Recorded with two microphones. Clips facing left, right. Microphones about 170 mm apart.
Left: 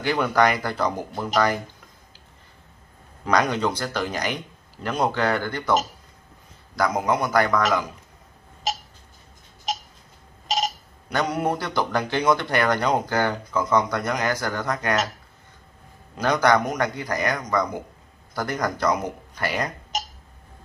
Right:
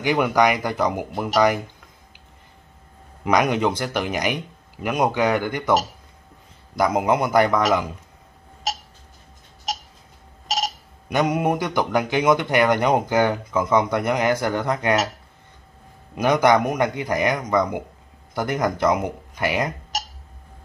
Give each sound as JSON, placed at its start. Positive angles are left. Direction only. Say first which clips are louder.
{"t": 0.0, "sound": "a man's voice", "louder": "right 2 dB", "side_deg": -15}
{"t": 3.3, "sound": "a man's voice", "louder": "right 3 dB", "side_deg": -15}
{"t": 6.8, "sound": "a man's voice", "louder": "right 3 dB", "side_deg": -20}
{"t": 11.1, "sound": "a man's voice", "louder": "right 3 dB", "side_deg": -20}
{"t": 16.2, "sound": "a man's voice", "louder": "right 3 dB", "side_deg": -20}